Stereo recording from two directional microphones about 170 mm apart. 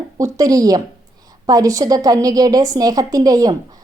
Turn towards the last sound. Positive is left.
turn(degrees=-20)  # may be behind; listen again after turning